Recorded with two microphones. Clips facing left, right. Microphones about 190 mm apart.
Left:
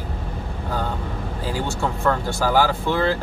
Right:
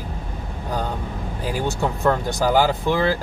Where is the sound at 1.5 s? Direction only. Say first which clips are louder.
Right 2 dB; 15° right (ahead or behind).